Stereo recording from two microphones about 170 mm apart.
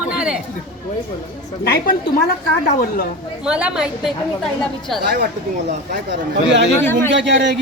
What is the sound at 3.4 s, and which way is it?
Speech, 5° right (ahead or behind).